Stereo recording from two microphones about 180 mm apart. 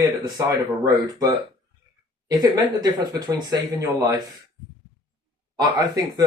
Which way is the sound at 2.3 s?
20° right (ahead or behind).